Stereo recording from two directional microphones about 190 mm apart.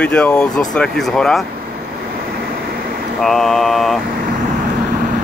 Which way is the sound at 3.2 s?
Centre (ahead or behind).